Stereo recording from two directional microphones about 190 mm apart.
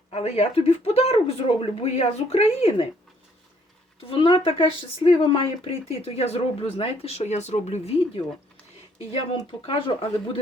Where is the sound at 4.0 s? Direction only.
30° left (ahead or behind).